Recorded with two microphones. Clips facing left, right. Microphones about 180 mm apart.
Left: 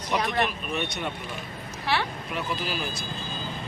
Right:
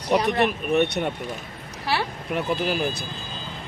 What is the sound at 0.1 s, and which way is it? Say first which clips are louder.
Speech: right 6 dB; 35° right (ahead or behind).